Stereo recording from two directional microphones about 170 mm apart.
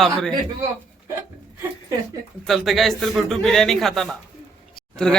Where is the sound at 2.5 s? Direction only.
Centre (ahead or behind).